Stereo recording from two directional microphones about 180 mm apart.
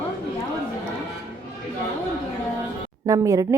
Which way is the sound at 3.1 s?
20° right (ahead or behind).